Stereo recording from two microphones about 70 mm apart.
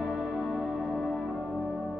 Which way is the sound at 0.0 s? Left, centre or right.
Centre.